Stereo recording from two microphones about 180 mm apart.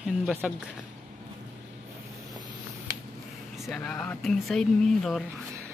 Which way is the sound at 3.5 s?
Centre (ahead or behind).